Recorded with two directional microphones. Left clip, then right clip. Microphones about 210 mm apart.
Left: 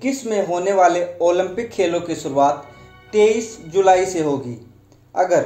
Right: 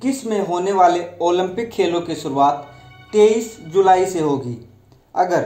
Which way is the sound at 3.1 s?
15° right (ahead or behind).